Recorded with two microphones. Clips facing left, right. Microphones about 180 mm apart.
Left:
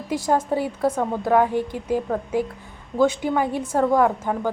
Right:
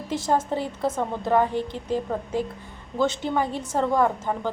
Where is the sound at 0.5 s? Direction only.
10° left (ahead or behind).